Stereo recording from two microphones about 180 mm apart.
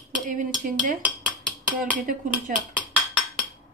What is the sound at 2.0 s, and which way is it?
Speech, 50° right (ahead or behind).